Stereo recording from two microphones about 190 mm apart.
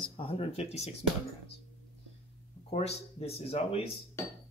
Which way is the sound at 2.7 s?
35° left (ahead or behind).